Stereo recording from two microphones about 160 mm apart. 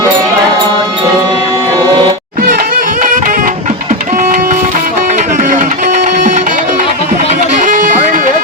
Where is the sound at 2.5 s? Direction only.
60° right (ahead or behind).